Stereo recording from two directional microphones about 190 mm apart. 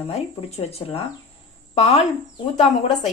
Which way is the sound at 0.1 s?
35° left (ahead or behind).